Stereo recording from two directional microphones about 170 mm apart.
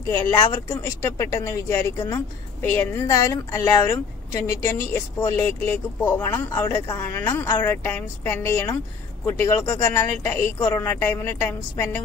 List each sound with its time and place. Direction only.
0.3 s a woman's voice: 20° left (ahead or behind)